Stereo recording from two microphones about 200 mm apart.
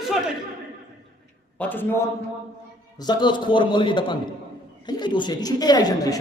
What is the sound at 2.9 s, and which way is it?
A man's voice, 20° left (ahead or behind).